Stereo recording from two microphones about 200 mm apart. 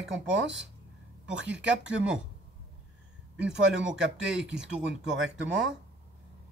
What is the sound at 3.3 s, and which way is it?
Speech, 5° right (ahead or behind).